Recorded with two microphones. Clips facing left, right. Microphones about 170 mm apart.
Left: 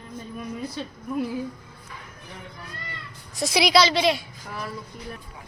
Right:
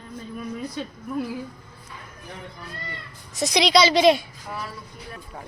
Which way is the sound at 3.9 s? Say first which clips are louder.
Right 6 dB; 20° right (ahead or behind).